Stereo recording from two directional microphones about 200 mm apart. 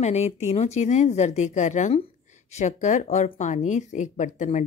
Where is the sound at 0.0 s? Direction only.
35° left (ahead or behind).